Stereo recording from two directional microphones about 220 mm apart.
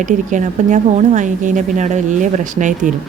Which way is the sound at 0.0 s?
35° right (ahead or behind).